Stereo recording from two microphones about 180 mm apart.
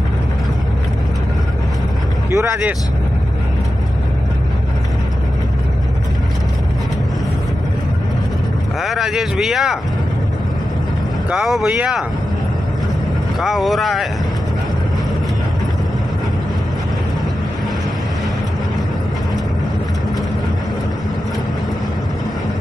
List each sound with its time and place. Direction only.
2.3 s speech: 15° right (ahead or behind)
8.8 s speech: centre (ahead or behind)
11.2 s speech: centre (ahead or behind)
13.4 s speech: centre (ahead or behind)